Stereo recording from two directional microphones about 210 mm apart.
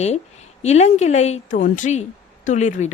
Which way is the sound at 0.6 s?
30° left (ahead or behind).